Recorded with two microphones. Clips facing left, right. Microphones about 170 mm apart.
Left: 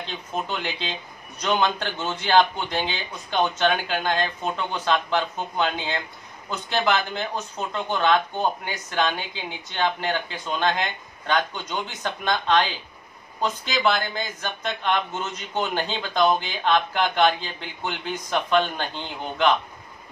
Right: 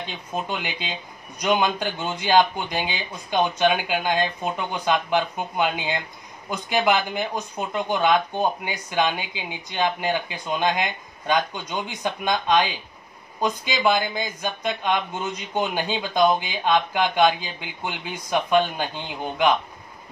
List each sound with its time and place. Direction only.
0.0 s speech: 10° right (ahead or behind)